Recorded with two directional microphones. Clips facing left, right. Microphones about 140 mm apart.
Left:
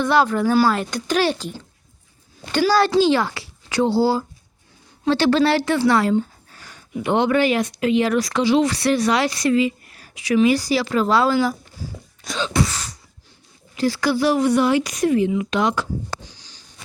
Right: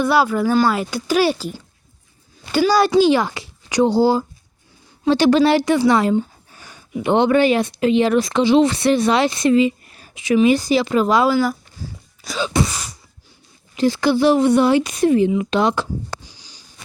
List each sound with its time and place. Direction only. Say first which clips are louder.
0.0 s speech: right 1 dB; 10° right (ahead or behind)
2.5 s speech: right 2 dB; 10° right (ahead or behind)
12.2 s speech: right 2 dB; 5° right (ahead or behind)
12.5 s a sound: even; 15° right (ahead or behind)
13.7 s speech: right 3 dB; 20° right (ahead or behind)
16.2 s a sound: left 1 dB; 10° right (ahead or behind)